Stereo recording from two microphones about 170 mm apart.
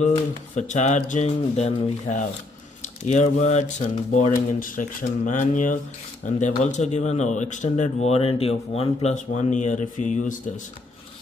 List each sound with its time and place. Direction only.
0.0 s speech: 45° left (ahead or behind)